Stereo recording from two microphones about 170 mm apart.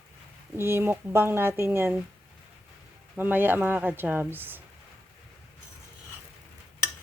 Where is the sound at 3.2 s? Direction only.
10° right (ahead or behind).